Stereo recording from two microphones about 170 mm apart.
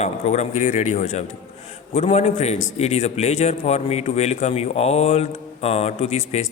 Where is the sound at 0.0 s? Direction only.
40° left (ahead or behind).